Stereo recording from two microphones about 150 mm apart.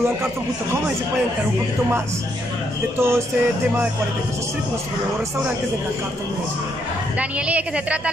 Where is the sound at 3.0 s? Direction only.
15° right (ahead or behind).